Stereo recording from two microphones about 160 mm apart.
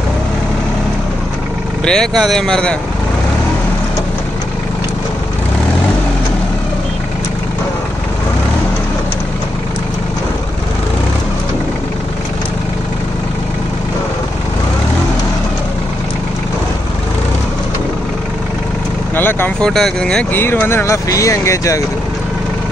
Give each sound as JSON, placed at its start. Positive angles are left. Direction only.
{"t": 1.9, "sound": "speech", "side_deg": 0}
{"t": 19.1, "sound": "speech", "side_deg": 10}